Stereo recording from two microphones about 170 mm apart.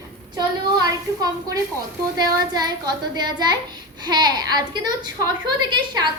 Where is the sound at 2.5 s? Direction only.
25° right (ahead or behind).